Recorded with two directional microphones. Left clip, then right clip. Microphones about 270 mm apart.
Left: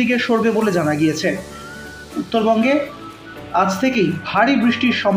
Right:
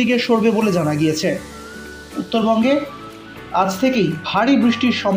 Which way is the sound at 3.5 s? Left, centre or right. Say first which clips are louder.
Even; centre.